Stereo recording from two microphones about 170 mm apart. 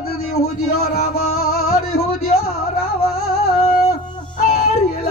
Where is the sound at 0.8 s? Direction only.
65° left (ahead or behind).